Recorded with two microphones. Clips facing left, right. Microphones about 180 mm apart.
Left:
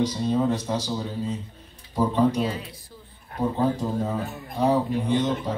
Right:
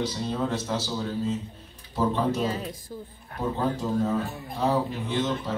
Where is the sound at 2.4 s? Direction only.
40° right (ahead or behind).